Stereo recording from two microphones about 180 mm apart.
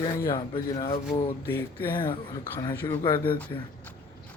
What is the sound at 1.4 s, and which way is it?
Speech, 10° left (ahead or behind).